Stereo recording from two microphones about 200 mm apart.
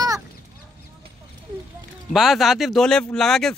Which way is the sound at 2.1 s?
Centre (ahead or behind).